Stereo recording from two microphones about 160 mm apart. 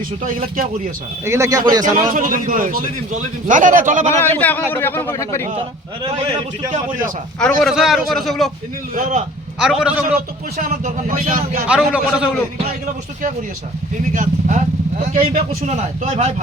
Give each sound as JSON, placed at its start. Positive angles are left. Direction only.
{"t": 0.2, "sound": "a man's voice", "side_deg": -60}
{"t": 1.2, "sound": "speech", "side_deg": -20}
{"t": 1.8, "sound": "a man's voice", "side_deg": -55}
{"t": 4.1, "sound": "speech", "side_deg": 15}
{"t": 7.3, "sound": "a man's voice", "side_deg": 5}
{"t": 9.0, "sound": "a man's voice", "side_deg": -50}
{"t": 9.6, "sound": "a man's voice", "side_deg": -5}
{"t": 10.2, "sound": "a man's voice", "side_deg": -55}
{"t": 11.7, "sound": "a man's voice", "side_deg": -5}
{"t": 14.1, "sound": "a man's voice", "side_deg": -55}